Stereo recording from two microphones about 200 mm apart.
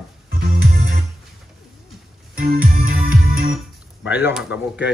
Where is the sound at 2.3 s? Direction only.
45° right (ahead or behind).